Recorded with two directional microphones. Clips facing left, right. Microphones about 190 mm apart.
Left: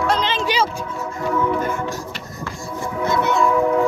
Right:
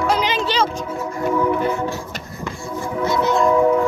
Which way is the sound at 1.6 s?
45° left (ahead or behind).